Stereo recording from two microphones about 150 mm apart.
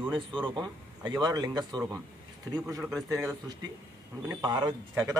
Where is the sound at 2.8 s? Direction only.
Centre (ahead or behind).